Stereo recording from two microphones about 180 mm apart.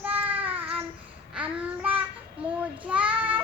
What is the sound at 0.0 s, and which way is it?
Child singing, 10° right (ahead or behind).